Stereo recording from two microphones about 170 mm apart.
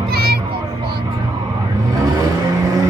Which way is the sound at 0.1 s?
65° right (ahead or behind).